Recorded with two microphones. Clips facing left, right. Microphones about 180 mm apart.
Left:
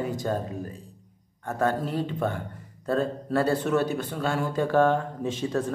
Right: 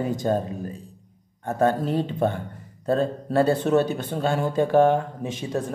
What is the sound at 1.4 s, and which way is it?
Speech, 25° right (ahead or behind).